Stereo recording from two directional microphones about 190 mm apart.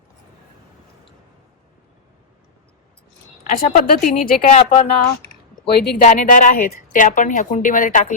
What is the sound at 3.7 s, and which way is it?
Speech, 50° left (ahead or behind).